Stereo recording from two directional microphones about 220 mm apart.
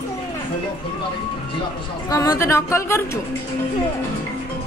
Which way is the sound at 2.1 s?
15° left (ahead or behind).